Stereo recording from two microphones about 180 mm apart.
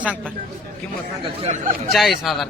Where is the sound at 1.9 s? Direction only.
Centre (ahead or behind).